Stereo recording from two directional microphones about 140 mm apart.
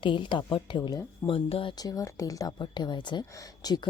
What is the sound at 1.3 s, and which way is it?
Speech, 45° left (ahead or behind).